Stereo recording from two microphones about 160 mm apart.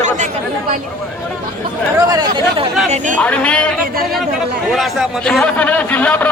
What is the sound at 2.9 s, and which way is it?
Speech, 50° right (ahead or behind).